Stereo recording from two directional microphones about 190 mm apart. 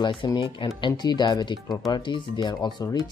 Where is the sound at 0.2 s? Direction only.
25° left (ahead or behind).